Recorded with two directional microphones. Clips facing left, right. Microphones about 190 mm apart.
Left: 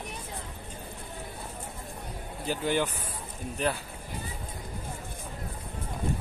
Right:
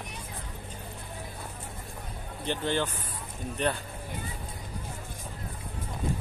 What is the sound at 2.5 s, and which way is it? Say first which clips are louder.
Speech: left 1 dB; 10° left (ahead or behind).